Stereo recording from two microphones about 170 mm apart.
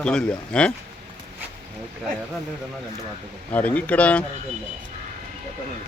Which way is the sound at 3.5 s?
10° left (ahead or behind).